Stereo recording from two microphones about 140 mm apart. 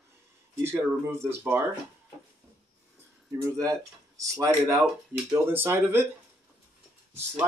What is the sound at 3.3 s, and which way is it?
Speech, 25° right (ahead or behind).